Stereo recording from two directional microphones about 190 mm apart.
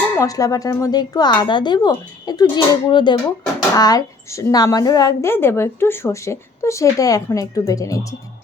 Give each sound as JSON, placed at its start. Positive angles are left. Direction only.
{"t": 0.2, "sound": "a woman's voice", "side_deg": 20}